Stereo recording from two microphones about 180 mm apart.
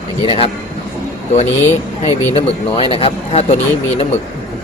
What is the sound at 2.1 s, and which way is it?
Speech, 35° left (ahead or behind).